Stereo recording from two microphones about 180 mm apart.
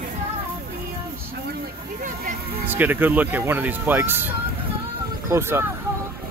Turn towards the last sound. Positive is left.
turn(degrees=-15)  # may be behind; listen again after turning